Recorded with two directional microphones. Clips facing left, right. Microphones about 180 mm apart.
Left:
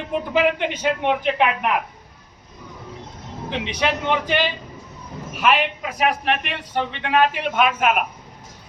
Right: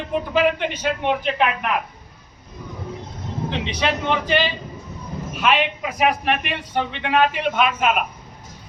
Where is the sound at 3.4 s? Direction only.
10° left (ahead or behind).